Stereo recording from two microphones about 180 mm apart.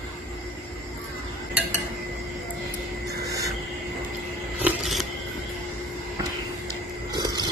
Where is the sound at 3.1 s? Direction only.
20° right (ahead or behind).